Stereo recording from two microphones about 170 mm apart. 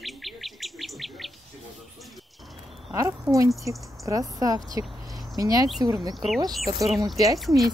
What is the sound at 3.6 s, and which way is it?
Speech, 20° right (ahead or behind).